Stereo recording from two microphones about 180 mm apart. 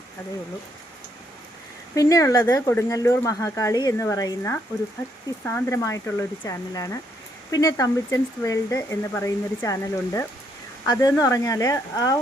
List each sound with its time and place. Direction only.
2.0 s speech: 20° left (ahead or behind)